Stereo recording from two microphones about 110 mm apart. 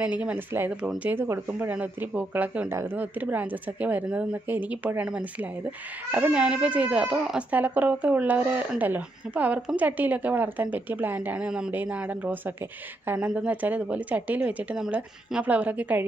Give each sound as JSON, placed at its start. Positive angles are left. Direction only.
{"t": 0.0, "sound": "speech", "side_deg": -10}